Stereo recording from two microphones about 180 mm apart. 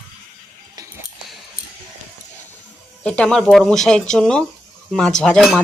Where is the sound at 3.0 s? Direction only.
5° left (ahead or behind).